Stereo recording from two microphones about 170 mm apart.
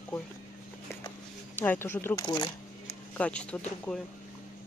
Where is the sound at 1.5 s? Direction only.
10° left (ahead or behind).